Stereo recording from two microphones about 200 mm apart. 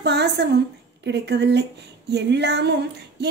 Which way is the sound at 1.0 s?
55° right (ahead or behind).